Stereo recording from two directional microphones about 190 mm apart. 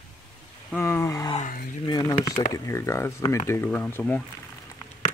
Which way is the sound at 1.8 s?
20° left (ahead or behind).